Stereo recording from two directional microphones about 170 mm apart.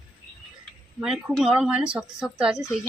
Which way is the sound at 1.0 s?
5° right (ahead or behind).